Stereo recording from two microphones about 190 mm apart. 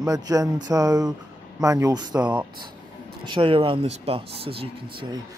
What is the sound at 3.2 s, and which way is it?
Speech, 25° right (ahead or behind).